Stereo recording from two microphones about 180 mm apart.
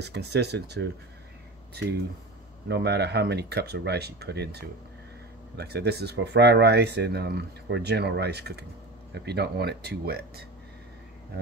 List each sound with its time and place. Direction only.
0.0 s speech: 70° right (ahead or behind)
2.7 s speech: 65° right (ahead or behind)